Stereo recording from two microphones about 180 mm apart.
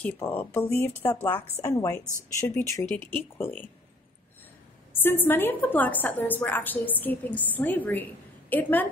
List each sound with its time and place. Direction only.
0.0 s a woman's voice: 10° left (ahead or behind)
5.0 s a woman's voice: 10° left (ahead or behind)